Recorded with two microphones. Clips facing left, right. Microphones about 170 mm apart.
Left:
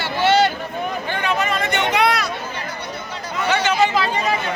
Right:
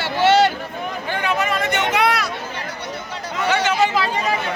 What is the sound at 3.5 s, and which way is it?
Chatter, 10° right (ahead or behind).